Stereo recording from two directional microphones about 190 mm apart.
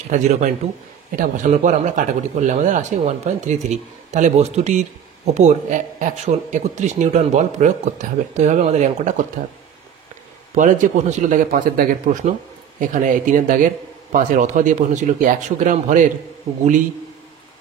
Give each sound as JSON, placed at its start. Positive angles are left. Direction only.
{"t": 0.1, "sound": "a man's voice", "side_deg": -40}